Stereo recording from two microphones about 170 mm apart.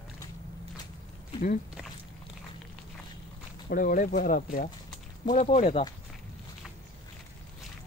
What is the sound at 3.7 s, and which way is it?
Speech, 55° left (ahead or behind).